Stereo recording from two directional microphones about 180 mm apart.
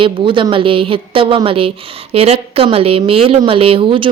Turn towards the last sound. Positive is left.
turn(degrees=-30)  # may be behind; listen again after turning